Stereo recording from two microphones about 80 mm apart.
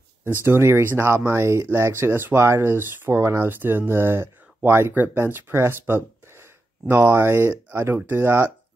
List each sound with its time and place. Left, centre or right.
0.5 s speech: right